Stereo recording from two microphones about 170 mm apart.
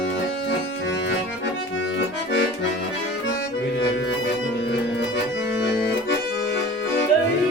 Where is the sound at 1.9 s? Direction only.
90° left.